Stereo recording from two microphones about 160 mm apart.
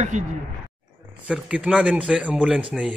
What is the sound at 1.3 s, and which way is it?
Speech, 10° right (ahead or behind).